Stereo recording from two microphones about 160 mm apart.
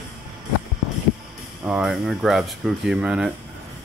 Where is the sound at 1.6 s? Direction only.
5° right (ahead or behind).